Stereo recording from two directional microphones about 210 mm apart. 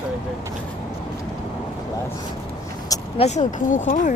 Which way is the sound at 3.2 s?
35° left (ahead or behind).